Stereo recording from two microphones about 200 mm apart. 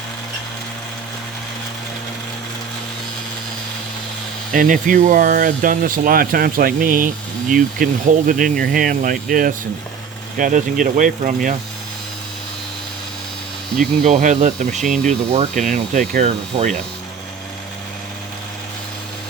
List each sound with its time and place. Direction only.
4.5 s speech: 45° right (ahead or behind)
14.0 s speech: 40° right (ahead or behind)
14.8 s speech: 5° left (ahead or behind)
15.3 s speech: 35° right (ahead or behind)